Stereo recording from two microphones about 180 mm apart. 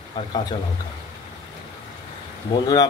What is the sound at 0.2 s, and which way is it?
Speech, 25° left (ahead or behind).